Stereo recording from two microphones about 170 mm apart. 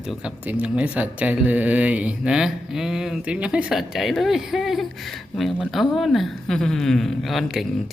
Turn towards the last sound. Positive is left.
turn(degrees=0)  # may be behind; listen again after turning